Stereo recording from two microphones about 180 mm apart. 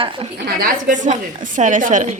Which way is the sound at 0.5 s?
50° right (ahead or behind).